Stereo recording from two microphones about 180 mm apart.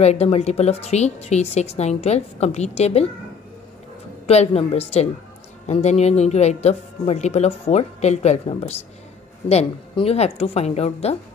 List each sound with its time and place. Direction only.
0.0 s speech: 35° left (ahead or behind)
4.3 s speech: 35° left (ahead or behind)